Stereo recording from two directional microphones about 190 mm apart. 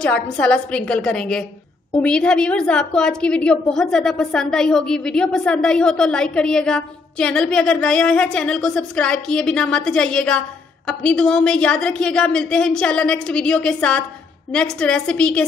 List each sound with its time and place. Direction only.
0.0 s a woman's voice: 5° left (ahead or behind)